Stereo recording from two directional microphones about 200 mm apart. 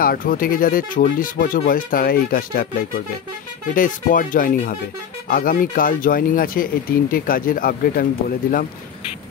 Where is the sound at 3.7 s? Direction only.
40° left (ahead or behind).